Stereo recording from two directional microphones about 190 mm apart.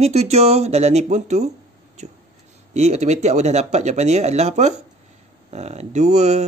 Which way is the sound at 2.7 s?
35° right (ahead or behind).